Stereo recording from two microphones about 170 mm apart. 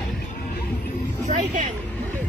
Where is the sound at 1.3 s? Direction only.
45° right (ahead or behind).